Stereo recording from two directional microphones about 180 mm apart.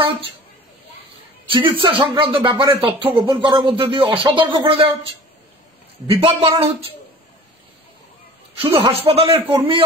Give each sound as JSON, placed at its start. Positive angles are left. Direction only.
{"t": 1.5, "sound": "speech", "side_deg": -25}
{"t": 6.0, "sound": "speech", "side_deg": -30}
{"t": 8.5, "sound": "speech", "side_deg": -30}
{"t": 9.4, "sound": "a man's voice", "side_deg": -10}